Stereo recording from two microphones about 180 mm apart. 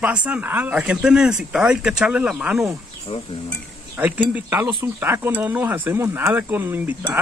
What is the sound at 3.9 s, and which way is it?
Speech, 10° right (ahead or behind).